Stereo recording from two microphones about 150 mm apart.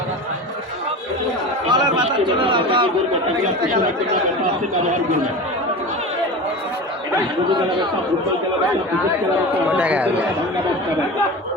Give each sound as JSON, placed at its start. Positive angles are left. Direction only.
{"t": 1.6, "sound": "chatter", "side_deg": -30}
{"t": 9.6, "sound": "speech", "side_deg": -10}